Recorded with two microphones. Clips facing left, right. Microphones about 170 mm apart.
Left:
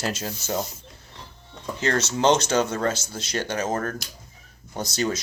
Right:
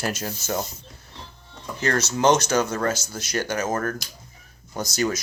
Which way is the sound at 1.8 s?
25° left (ahead or behind).